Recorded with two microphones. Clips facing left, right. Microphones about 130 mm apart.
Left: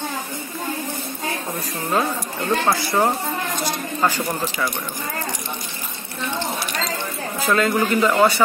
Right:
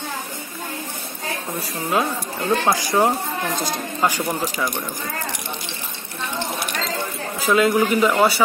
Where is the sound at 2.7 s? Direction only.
15° right (ahead or behind).